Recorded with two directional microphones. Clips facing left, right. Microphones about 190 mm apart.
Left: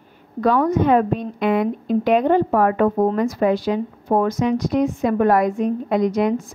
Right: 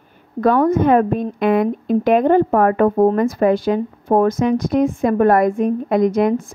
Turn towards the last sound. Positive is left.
turn(degrees=-50)  # may be behind; listen again after turning